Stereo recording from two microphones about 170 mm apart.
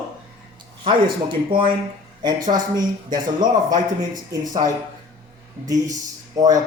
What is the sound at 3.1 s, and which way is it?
Speech, 25° right (ahead or behind).